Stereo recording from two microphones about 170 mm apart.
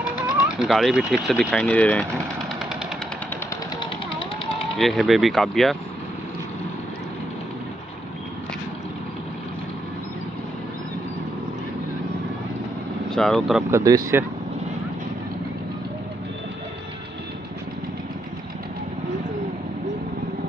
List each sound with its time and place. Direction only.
0.0 s speech: 5° right (ahead or behind)
1.6 s speech: 10° left (ahead or behind)
4.7 s speech: centre (ahead or behind)
13.1 s speech: 5° left (ahead or behind)
13.7 s speech: 20° right (ahead or behind)